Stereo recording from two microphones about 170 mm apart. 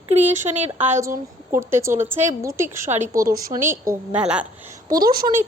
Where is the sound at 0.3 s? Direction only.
45° right (ahead or behind).